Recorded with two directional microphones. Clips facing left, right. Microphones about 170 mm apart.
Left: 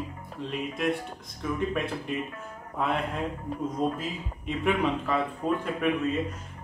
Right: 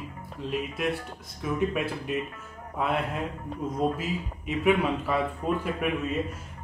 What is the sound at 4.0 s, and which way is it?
Speech, 5° right (ahead or behind).